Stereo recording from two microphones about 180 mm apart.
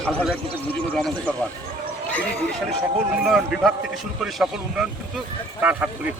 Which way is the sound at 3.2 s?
5° right (ahead or behind).